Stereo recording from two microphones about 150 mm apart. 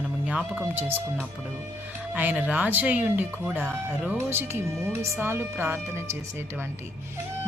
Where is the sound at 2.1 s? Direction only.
10° right (ahead or behind).